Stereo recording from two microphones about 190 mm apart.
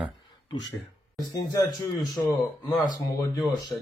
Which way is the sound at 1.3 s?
20° left (ahead or behind).